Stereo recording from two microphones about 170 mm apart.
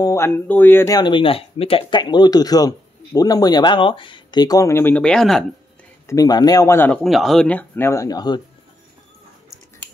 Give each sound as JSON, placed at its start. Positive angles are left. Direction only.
{"t": 0.0, "sound": "speech", "side_deg": 15}
{"t": 6.0, "sound": "speech", "side_deg": 20}